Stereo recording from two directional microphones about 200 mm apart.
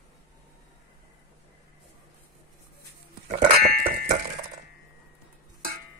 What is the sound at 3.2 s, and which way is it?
Goat, 35° right (ahead or behind).